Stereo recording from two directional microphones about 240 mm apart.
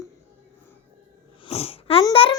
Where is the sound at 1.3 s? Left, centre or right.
Left.